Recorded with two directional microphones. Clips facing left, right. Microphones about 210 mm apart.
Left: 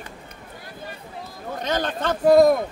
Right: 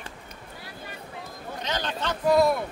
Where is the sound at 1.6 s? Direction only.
50° left (ahead or behind).